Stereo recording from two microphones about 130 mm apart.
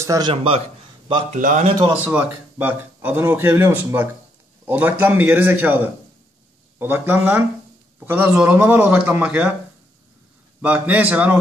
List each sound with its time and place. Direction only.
0.0 s speech: 25° right (ahead or behind)
0.3 s a man's voice: 45° right (ahead or behind)
1.3 s speech: 80° right
1.9 s speech: 15° right (ahead or behind)
10.6 s speech: 10° right (ahead or behind)